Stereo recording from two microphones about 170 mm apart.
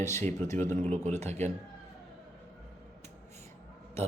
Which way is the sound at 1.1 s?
40° right (ahead or behind).